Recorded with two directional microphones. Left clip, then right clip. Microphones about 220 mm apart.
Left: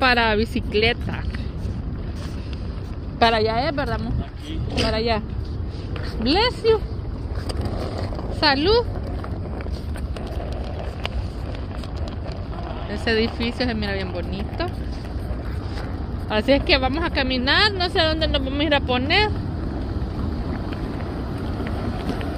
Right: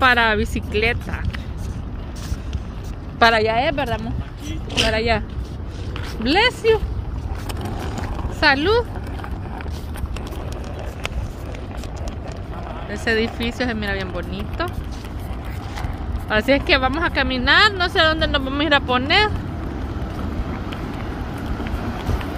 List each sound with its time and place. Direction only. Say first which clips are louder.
0.0 s speech: right 2 dB; 10° right (ahead or behind)
3.2 s a woman's voice: right 3 dB; 25° right (ahead or behind)
6.2 s a woman's voice: right 2 dB; 25° right (ahead or behind)
7.8 s a sound: even; 20° right (ahead or behind)
12.9 s a woman's voice: right 1 dB; 15° right (ahead or behind)
16.3 s a woman's voice: right 2 dB; 20° right (ahead or behind)